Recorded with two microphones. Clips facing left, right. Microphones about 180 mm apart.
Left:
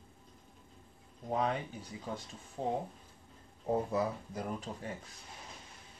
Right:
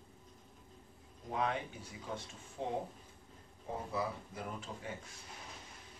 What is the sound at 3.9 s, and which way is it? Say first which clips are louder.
Speech: left 5 dB; 40° left (ahead or behind).